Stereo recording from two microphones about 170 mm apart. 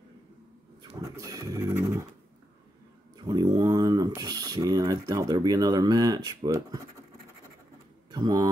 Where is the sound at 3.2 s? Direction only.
25° right (ahead or behind).